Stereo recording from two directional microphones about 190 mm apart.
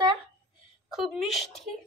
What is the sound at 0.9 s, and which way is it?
Speech, centre (ahead or behind).